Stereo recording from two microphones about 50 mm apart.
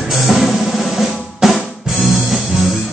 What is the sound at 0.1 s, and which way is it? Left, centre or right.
Drum, centre.